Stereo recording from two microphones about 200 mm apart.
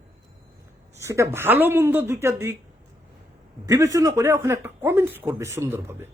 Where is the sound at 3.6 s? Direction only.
15° right (ahead or behind).